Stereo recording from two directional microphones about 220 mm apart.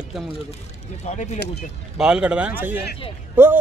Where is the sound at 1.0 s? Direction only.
30° left (ahead or behind).